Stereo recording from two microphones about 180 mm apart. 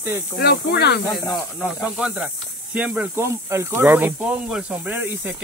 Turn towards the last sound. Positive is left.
turn(degrees=-10)  # may be behind; listen again after turning